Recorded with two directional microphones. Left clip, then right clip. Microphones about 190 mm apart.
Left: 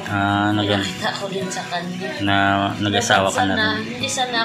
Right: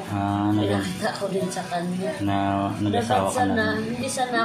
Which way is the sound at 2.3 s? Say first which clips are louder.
Left 8 dB; 10° left (ahead or behind).